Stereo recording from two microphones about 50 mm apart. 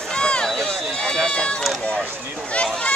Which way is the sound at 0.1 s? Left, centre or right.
Centre.